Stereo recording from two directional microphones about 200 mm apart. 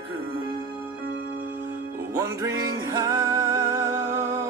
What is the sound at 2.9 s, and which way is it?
Music, 20° right (ahead or behind).